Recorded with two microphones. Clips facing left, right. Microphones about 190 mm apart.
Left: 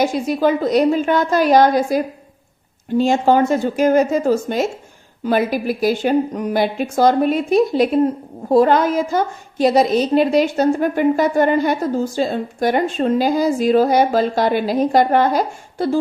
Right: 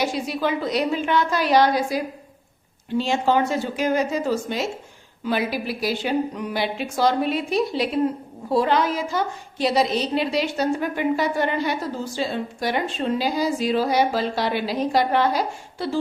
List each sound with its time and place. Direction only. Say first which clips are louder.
0.0 s a woman's voice: left 7 dB; 45° left (ahead or behind)